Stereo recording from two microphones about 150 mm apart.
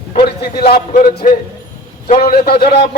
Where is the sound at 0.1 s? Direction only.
90° left.